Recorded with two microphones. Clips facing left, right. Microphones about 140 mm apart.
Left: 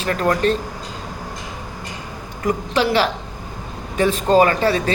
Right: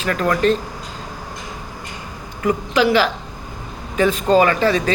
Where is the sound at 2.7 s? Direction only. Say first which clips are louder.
Right 2 dB; 35° left (ahead or behind).